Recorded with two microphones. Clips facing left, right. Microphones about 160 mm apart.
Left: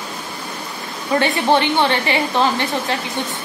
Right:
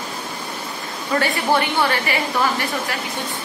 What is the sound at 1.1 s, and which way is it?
A woman's voice, 25° left (ahead or behind).